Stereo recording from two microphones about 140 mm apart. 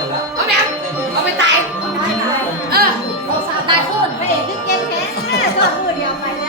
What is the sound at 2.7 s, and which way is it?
Music, 90° right.